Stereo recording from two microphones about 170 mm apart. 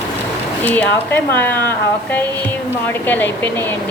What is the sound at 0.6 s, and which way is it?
Speech, 10° left (ahead or behind).